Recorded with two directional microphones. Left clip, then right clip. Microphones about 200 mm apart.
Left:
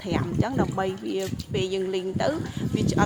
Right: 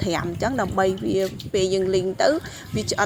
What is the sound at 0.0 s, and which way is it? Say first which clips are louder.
Speech: right 4 dB; 25° right (ahead or behind).